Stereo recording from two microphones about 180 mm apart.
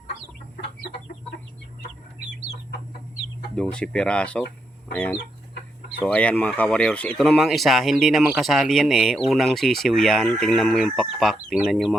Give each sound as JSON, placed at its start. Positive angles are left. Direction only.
{"t": 3.5, "sound": "speech", "side_deg": 5}
{"t": 6.0, "sound": "speech", "side_deg": 5}